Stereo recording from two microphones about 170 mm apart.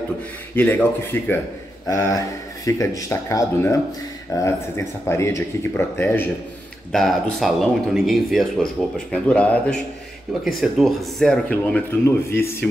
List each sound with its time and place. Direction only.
0.6 s speech: 10° left (ahead or behind)
6.9 s speech: centre (ahead or behind)